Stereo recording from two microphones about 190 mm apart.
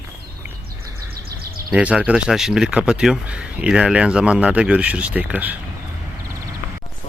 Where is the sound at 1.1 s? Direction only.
55° right (ahead or behind).